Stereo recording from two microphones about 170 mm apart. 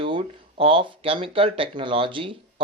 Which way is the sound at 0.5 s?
30° right (ahead or behind).